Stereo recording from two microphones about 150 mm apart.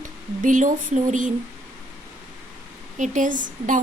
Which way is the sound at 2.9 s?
55° right (ahead or behind).